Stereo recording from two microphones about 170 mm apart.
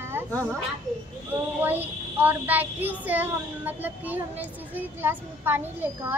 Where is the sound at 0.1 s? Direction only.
15° right (ahead or behind).